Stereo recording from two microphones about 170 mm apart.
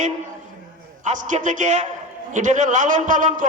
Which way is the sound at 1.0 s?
50° right (ahead or behind).